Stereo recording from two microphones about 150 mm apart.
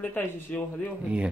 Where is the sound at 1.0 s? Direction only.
10° right (ahead or behind).